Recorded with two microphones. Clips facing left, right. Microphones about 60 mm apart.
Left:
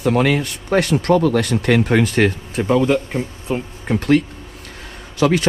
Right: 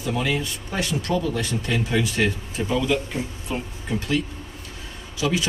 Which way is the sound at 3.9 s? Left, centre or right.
Left.